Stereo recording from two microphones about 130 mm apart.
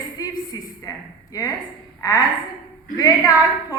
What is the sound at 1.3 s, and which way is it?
Speech, 25° left (ahead or behind).